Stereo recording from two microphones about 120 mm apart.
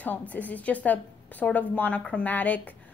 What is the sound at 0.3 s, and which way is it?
A woman's voice, 15° left (ahead or behind).